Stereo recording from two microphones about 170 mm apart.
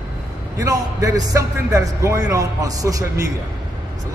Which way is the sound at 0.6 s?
20° right (ahead or behind).